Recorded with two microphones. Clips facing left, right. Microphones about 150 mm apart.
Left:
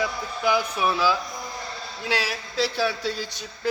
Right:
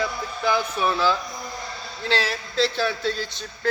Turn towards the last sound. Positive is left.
turn(degrees=10)  # may be behind; listen again after turning